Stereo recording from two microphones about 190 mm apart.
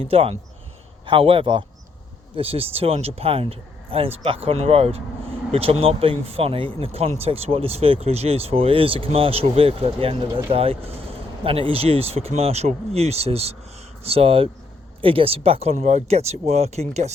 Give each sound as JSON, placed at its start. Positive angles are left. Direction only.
{"t": 0.0, "sound": "speech", "side_deg": -30}